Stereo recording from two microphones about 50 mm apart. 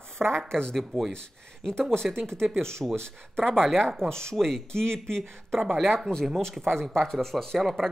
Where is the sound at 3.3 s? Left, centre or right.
Centre.